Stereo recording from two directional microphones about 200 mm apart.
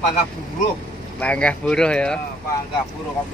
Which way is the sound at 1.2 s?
5° left (ahead or behind).